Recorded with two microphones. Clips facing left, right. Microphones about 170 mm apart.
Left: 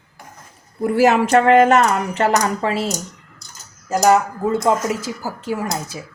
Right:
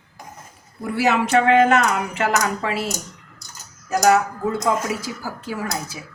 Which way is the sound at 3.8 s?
25° left (ahead or behind).